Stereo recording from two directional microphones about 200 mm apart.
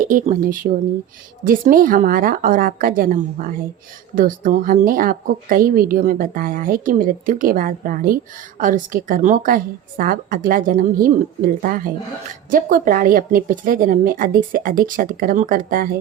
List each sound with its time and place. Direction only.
0.0 s a woman's voice: 40° right (ahead or behind)